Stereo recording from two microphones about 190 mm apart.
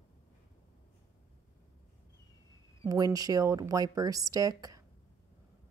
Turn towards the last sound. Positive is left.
turn(degrees=-20)  # may be behind; listen again after turning